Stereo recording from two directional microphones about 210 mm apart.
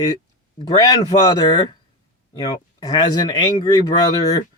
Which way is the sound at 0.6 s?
20° left (ahead or behind).